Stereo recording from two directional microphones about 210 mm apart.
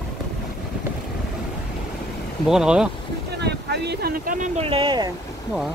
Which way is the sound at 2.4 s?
5° right (ahead or behind).